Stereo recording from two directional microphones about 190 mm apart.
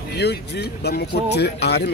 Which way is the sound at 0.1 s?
60° left (ahead or behind).